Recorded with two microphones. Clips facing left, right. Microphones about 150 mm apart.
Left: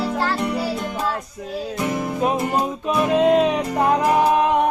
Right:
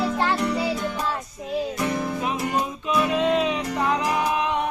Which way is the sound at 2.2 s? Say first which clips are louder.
Left 5 dB; 45° left (ahead or behind).